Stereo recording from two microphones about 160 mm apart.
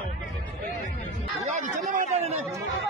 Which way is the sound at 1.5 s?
50° right (ahead or behind).